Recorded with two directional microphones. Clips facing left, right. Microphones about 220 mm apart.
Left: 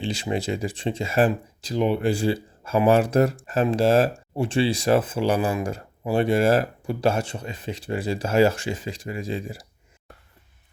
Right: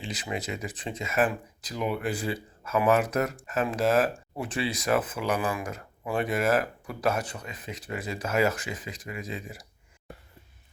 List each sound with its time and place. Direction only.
0.0 s speech: 30° left (ahead or behind)